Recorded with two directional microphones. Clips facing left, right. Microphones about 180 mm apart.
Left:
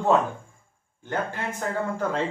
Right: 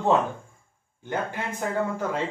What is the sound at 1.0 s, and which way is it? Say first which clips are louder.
Speech: even; 15° right (ahead or behind).